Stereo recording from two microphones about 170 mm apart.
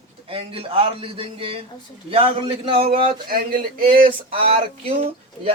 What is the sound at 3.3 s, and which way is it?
Speech, 60° right (ahead or behind).